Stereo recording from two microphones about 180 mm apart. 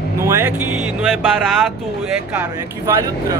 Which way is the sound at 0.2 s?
15° right (ahead or behind).